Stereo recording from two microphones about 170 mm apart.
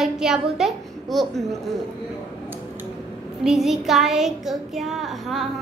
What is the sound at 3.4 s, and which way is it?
Child singing, centre (ahead or behind).